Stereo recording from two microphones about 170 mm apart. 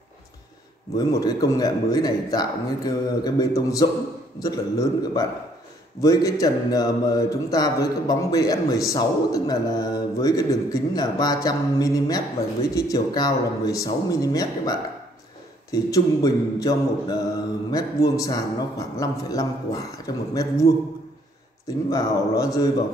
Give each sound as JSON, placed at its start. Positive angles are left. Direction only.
{"t": 0.9, "sound": "speech", "side_deg": 20}